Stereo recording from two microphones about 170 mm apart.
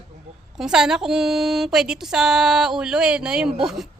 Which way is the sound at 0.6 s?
5° right (ahead or behind).